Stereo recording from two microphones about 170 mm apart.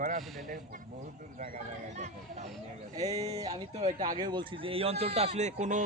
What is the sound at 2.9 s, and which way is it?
Speech, 40° right (ahead or behind).